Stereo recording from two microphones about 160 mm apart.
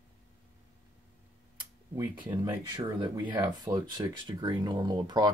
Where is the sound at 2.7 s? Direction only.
30° right (ahead or behind).